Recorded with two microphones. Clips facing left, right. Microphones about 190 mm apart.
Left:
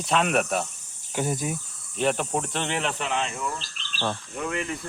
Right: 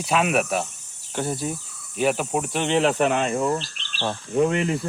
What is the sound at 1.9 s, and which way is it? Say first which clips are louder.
Speech: right 3 dB; 5° right (ahead or behind).